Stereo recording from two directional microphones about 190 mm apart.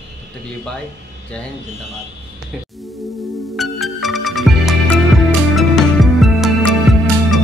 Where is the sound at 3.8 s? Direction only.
Centre (ahead or behind).